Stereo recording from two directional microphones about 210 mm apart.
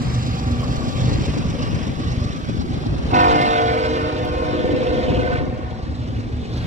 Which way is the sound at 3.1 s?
35° right (ahead or behind).